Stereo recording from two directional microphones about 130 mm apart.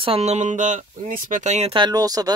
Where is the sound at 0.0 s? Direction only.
50° right (ahead or behind).